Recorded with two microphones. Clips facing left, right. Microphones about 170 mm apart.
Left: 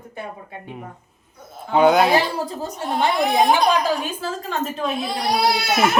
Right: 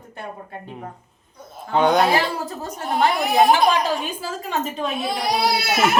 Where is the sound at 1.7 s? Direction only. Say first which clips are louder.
Left 2 dB; 5° left (ahead or behind).